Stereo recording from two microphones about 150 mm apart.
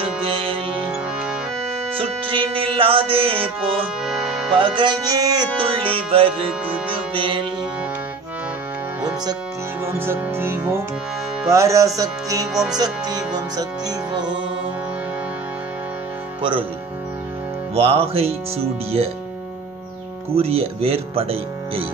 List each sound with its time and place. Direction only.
0.2 s music: 35° right (ahead or behind)
2.0 s music: 35° right (ahead or behind)
4.0 s music: 5° right (ahead or behind)
4.6 s music: 30° right (ahead or behind)
9.0 s music: 25° right (ahead or behind)
9.8 s music: 15° right (ahead or behind)
17.7 s music: 40° right (ahead or behind)
20.3 s music: 40° right (ahead or behind)